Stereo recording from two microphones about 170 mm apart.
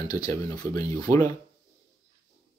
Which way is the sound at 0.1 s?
20° left (ahead or behind).